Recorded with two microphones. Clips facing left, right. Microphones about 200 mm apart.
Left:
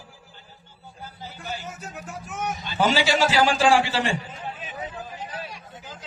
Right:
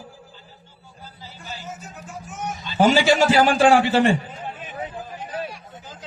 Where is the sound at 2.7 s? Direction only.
50° right (ahead or behind).